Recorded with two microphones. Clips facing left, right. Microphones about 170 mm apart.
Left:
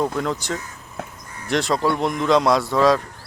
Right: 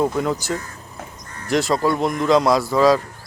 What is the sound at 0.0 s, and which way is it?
Speech, 5° right (ahead or behind).